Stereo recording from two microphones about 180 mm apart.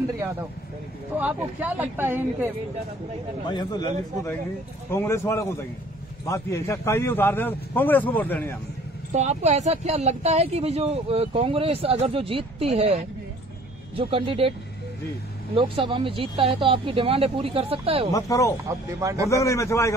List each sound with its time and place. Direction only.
1.1 s speech: 10° right (ahead or behind)
3.4 s a man's voice: 25° left (ahead or behind)
4.9 s a man's voice: 15° left (ahead or behind)
9.1 s speech: 40° right (ahead or behind)
15.5 s speech: 30° right (ahead or behind)
18.1 s a man's voice: 20° left (ahead or behind)
18.9 s speech: 15° right (ahead or behind)
19.2 s a man's voice: 15° left (ahead or behind)